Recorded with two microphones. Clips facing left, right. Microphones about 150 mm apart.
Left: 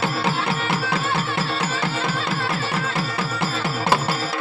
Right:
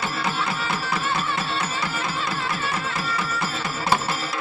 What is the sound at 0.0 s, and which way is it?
Music, 75° left (ahead or behind).